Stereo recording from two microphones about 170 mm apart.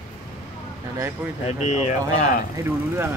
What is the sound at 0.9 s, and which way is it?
Speech, 15° right (ahead or behind).